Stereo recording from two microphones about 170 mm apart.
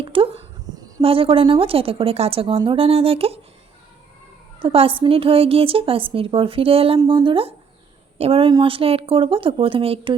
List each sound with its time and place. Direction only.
0.0 s a sound: 30° right (ahead or behind)
1.0 s speech: 30° right (ahead or behind)
4.6 s speech: 35° right (ahead or behind)